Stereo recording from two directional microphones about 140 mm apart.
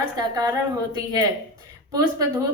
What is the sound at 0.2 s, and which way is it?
A woman's voice, 25° right (ahead or behind).